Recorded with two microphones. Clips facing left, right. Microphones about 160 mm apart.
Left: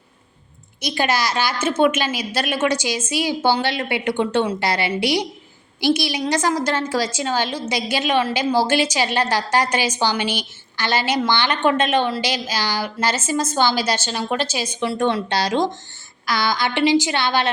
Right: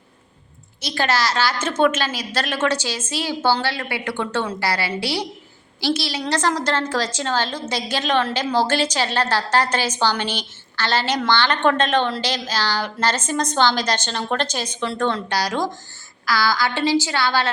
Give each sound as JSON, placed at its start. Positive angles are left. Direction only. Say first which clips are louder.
{"t": 0.8, "sound": "a woman's voice", "louder": "left 1 dB", "side_deg": 15}
{"t": 15.3, "sound": "a woman's voice", "louder": "left 3 dB", "side_deg": 25}